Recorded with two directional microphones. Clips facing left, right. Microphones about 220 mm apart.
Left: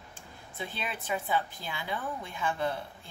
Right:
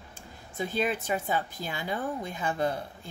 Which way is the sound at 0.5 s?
40° right (ahead or behind).